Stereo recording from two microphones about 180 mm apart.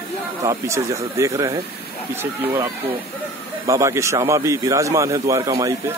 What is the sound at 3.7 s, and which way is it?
A man's voice, 15° right (ahead or behind).